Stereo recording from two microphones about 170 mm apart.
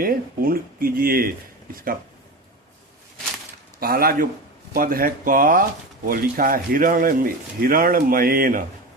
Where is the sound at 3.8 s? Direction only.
60° right (ahead or behind).